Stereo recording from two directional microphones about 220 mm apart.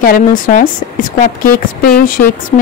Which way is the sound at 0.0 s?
40° left (ahead or behind).